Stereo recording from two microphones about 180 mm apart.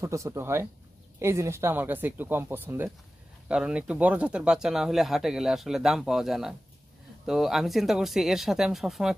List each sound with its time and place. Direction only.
0.0 s speech: 15° right (ahead or behind); by 9.1 s centre (ahead or behind)